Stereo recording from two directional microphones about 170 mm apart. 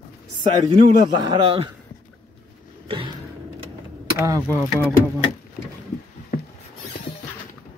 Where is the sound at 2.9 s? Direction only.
30° right (ahead or behind).